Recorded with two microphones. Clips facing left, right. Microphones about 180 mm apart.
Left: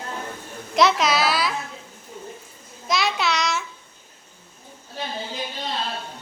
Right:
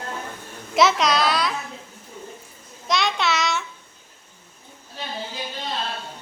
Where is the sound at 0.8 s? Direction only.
Centre (ahead or behind).